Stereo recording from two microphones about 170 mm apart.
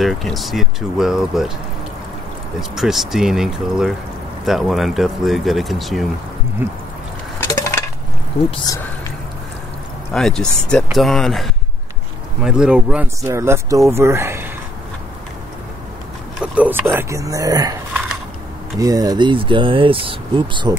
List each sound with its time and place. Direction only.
0.0 s speech: centre (ahead or behind)
2.7 s speech: centre (ahead or behind)
6.6 s speech: 10° right (ahead or behind)
8.6 s a sound: 20° left (ahead or behind)
10.1 s speech: 5° left (ahead or behind); by 14.5 s 15° right (ahead or behind)
16.3 s speech: 10° right (ahead or behind)
18.8 s speech: 20° right (ahead or behind)